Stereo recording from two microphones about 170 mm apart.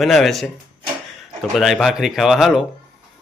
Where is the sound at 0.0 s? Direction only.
Centre (ahead or behind).